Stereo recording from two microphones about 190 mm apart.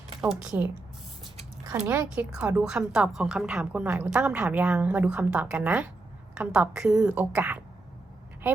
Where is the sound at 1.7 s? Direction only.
10° right (ahead or behind).